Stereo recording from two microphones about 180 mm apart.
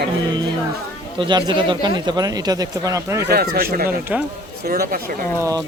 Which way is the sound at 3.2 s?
60° right (ahead or behind).